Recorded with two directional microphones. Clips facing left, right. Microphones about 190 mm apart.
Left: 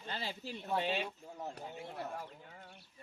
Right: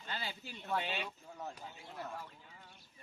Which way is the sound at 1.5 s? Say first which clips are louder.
Left 6 dB; 55° left (ahead or behind).